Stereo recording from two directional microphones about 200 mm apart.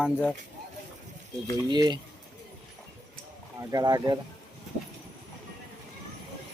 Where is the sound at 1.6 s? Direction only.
20° right (ahead or behind).